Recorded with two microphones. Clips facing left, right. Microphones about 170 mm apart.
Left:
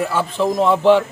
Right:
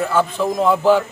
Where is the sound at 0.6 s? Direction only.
5° right (ahead or behind).